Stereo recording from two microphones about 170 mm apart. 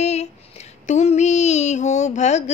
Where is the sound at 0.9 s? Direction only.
40° left (ahead or behind).